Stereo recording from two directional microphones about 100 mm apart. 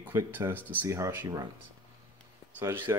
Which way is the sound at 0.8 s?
30° right (ahead or behind).